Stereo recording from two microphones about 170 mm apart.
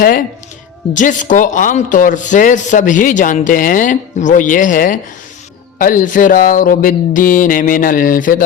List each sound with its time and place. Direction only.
0.0 s a man's voice: 55° left (ahead or behind)